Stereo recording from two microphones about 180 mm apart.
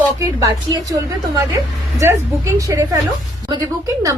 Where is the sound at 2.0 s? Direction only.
15° right (ahead or behind).